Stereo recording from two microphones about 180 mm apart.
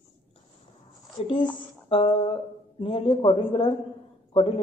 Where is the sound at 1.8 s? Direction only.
30° left (ahead or behind).